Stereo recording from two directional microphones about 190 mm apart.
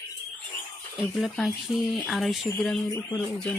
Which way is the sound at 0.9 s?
Centre (ahead or behind).